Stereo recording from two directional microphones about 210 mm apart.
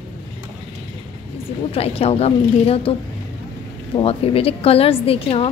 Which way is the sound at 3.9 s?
25° left (ahead or behind).